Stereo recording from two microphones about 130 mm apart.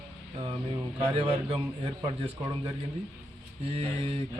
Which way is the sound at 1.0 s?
45° right (ahead or behind).